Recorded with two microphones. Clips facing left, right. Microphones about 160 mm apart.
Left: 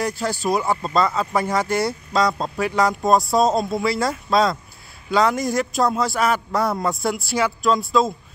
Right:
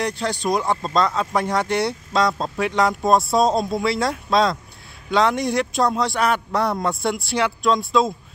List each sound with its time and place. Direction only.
0.0 s speech: 5° left (ahead or behind)